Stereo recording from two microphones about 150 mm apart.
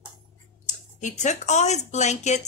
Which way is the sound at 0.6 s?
55° left (ahead or behind).